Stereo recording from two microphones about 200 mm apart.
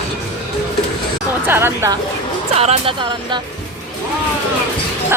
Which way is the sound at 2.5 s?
30° right (ahead or behind).